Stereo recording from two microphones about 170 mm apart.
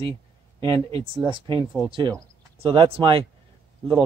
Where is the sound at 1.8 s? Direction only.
30° right (ahead or behind).